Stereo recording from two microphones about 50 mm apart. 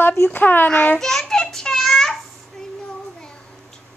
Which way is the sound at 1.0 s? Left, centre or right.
Centre.